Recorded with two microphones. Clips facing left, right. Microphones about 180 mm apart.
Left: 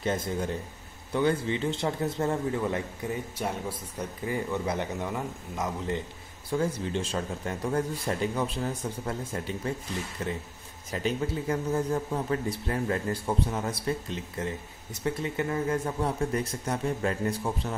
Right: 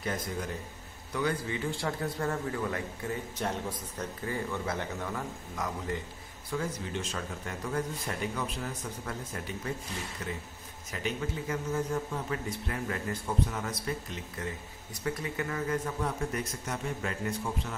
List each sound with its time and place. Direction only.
0.0 s a man's voice: 25° left (ahead or behind)
6.5 s a man's voice: 30° left (ahead or behind)